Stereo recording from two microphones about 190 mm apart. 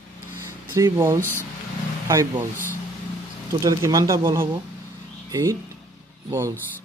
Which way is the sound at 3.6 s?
20° right (ahead or behind).